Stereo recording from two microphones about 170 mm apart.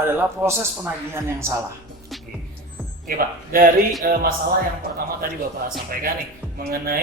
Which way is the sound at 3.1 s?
60° right (ahead or behind).